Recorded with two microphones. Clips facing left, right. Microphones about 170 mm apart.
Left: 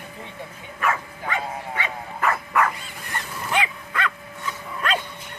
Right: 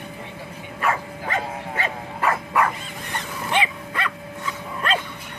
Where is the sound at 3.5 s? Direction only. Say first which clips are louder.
Right 1 dB; 25° right (ahead or behind).